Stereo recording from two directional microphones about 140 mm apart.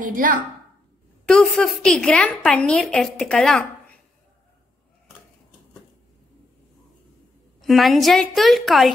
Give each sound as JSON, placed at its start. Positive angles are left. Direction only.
{"t": 0.0, "sound": "a woman's voice", "side_deg": -70}
{"t": 1.3, "sound": "a woman's voice", "side_deg": 5}
{"t": 7.6, "sound": "a woman's voice", "side_deg": 0}